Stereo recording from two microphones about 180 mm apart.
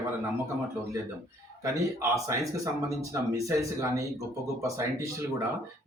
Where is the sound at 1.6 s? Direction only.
15° right (ahead or behind).